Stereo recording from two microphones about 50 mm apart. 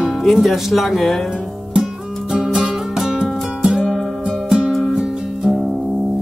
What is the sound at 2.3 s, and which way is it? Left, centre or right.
Music, centre.